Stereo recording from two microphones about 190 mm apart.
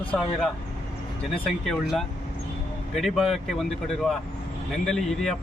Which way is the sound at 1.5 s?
Centre (ahead or behind).